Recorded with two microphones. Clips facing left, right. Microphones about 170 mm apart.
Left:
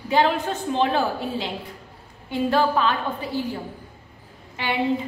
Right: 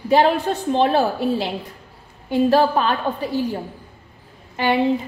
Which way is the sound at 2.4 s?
40° right (ahead or behind).